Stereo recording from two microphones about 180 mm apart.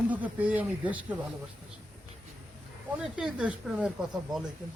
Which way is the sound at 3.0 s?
5° right (ahead or behind).